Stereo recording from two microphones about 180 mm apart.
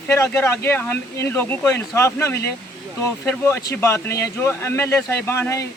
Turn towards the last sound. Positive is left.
turn(degrees=15)  # may be behind; listen again after turning